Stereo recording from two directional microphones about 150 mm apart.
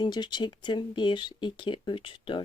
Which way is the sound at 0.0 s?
30° left (ahead or behind).